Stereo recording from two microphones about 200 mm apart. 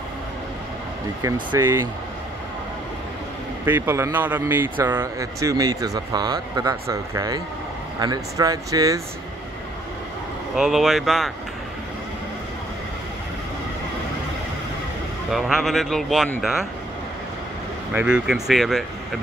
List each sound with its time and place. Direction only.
1.2 s speech: 15° right (ahead or behind)
3.6 s speech: 10° right (ahead or behind)
10.5 s speech: centre (ahead or behind)
15.2 s speech: centre (ahead or behind)
17.9 s speech: 5° right (ahead or behind)